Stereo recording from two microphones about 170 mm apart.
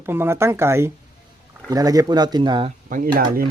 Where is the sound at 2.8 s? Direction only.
55° right (ahead or behind).